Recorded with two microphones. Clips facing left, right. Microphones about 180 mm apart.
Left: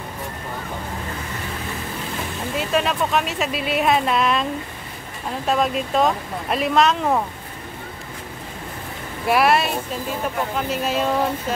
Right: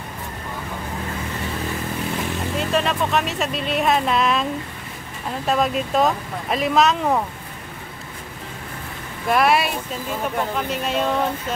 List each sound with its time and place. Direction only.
2.7 s speech: centre (ahead or behind)
5.5 s speech: centre (ahead or behind)
9.3 s speech: centre (ahead or behind)